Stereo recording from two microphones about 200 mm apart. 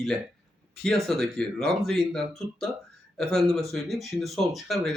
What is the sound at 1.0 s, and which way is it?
Speech, centre (ahead or behind).